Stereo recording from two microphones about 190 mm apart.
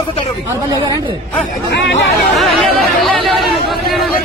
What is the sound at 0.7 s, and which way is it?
Speech, 20° right (ahead or behind).